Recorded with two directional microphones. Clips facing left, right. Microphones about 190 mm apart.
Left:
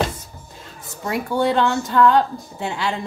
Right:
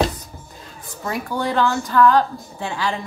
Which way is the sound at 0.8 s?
25° left (ahead or behind).